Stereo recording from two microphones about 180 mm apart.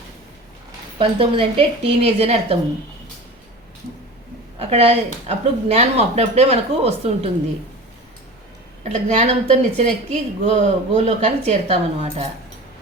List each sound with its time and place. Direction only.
0.9 s a woman's voice: 30° right (ahead or behind)
4.7 s a woman's voice: 35° right (ahead or behind)
8.8 s a woman's voice: 35° right (ahead or behind)